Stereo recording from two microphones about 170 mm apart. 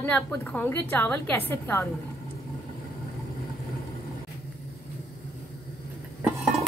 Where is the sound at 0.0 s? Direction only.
10° left (ahead or behind).